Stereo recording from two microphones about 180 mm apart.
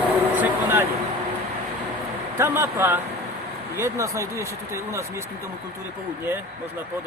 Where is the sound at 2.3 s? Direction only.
15° right (ahead or behind).